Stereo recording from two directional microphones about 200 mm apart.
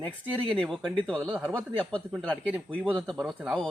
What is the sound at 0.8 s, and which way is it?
Speech, 25° right (ahead or behind).